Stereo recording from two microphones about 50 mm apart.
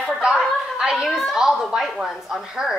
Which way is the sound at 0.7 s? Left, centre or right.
Centre.